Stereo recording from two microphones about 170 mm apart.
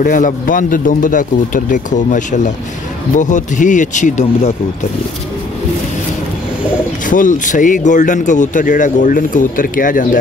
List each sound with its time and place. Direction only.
0.0 s speech: 55° left (ahead or behind)
7.1 s speech: 50° left (ahead or behind)